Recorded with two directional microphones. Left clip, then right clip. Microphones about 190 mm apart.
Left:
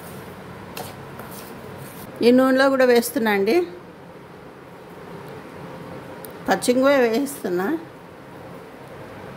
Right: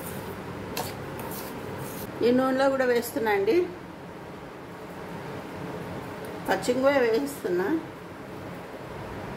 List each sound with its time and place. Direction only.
2.1 s a woman's voice: 50° left (ahead or behind)
6.4 s a woman's voice: 55° left (ahead or behind)